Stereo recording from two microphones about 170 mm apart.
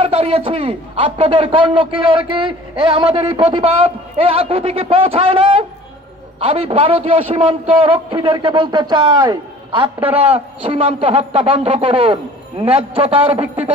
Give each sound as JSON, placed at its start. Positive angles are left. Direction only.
{"t": 0.0, "sound": "a man's voice", "side_deg": -30}